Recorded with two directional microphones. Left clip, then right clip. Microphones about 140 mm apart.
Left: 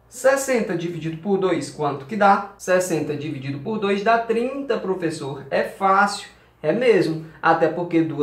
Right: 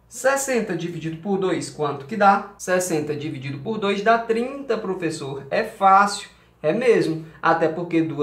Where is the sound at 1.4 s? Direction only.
45° right (ahead or behind).